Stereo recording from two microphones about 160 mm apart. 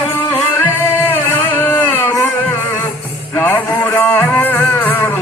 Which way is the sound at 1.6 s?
15° left (ahead or behind).